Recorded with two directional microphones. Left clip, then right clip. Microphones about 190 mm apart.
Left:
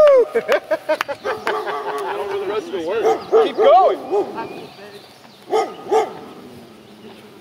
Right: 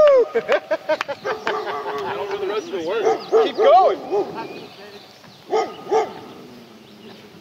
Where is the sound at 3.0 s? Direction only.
55° left (ahead or behind).